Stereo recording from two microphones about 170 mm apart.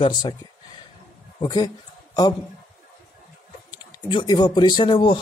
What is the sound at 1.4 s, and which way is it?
Speech, 25° left (ahead or behind).